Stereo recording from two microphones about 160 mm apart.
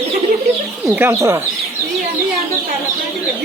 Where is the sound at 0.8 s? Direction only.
10° right (ahead or behind).